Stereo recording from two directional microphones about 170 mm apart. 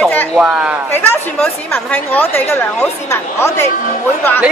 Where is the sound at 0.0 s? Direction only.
10° left (ahead or behind).